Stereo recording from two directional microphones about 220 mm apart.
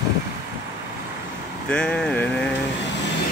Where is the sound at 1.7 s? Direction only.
5° left (ahead or behind).